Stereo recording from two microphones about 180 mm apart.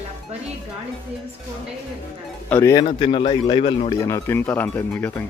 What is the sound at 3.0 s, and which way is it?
Speech, 30° left (ahead or behind).